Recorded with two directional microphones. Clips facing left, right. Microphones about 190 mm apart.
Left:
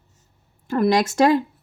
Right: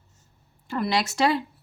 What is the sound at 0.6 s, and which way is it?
Speech, 45° left (ahead or behind).